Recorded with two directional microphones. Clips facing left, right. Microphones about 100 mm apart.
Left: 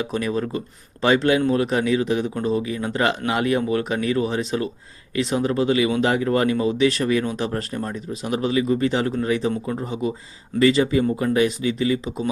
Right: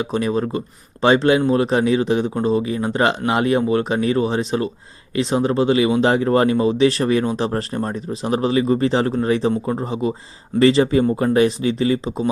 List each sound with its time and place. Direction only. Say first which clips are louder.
0.0 s a man's voice: right 3 dB; 25° right (ahead or behind)